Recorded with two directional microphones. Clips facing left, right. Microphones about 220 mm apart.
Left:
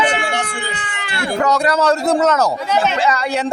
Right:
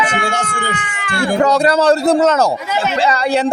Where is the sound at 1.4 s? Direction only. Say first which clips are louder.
Right 3 dB; 30° right (ahead or behind).